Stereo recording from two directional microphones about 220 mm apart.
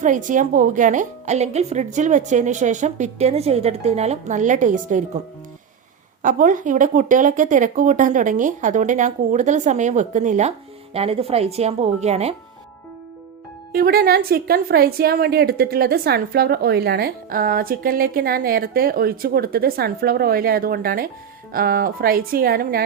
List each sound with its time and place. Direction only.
0.0 s speech: 35° right (ahead or behind)
6.2 s a woman's voice: 35° right (ahead or behind)
13.7 s a woman's voice: 45° right (ahead or behind)